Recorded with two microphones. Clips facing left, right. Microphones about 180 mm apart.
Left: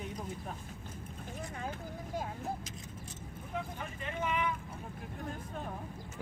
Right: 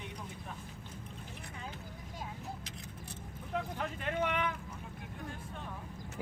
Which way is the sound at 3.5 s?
75° right (ahead or behind).